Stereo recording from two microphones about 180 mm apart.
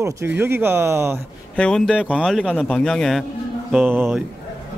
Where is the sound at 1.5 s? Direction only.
5° left (ahead or behind).